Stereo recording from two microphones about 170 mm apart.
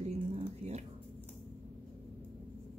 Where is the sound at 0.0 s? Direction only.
40° right (ahead or behind).